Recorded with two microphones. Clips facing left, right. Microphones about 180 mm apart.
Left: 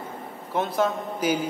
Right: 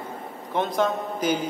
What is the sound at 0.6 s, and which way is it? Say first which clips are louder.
Speech: right 1 dB; 10° left (ahead or behind).